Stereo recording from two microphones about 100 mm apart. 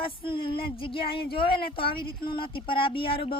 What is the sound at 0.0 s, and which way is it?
Speech, 60° left (ahead or behind).